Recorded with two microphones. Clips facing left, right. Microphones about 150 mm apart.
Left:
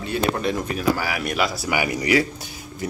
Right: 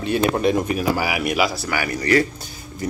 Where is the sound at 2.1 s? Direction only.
5° left (ahead or behind).